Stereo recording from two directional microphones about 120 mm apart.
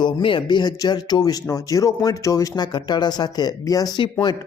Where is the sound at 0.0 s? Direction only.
45° left (ahead or behind).